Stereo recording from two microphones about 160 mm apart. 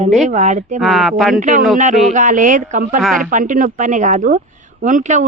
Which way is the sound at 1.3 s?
50° right (ahead or behind).